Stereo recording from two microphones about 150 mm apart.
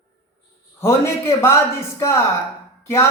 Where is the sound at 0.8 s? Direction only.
20° left (ahead or behind).